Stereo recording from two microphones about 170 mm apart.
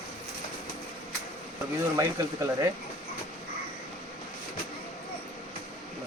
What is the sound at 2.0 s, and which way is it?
Speech, 15° right (ahead or behind).